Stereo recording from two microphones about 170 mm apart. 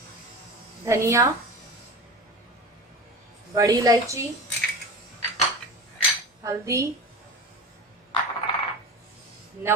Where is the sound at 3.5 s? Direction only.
20° right (ahead or behind).